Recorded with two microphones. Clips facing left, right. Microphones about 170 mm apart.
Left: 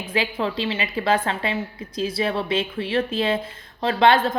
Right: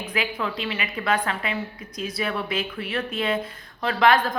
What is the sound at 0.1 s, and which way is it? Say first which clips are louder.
A woman's voice: left 5 dB; 30° left (ahead or behind).